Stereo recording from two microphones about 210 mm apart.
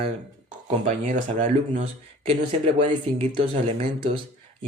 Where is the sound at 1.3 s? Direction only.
25° right (ahead or behind).